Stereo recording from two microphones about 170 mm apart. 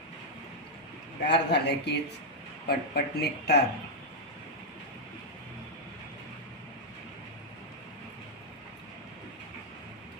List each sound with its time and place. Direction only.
1.3 s a man's voice: 80° left